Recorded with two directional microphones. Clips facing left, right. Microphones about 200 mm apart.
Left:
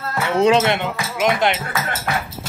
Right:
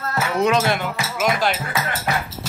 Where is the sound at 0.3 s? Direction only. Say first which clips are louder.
Left 4 dB; 30° left (ahead or behind).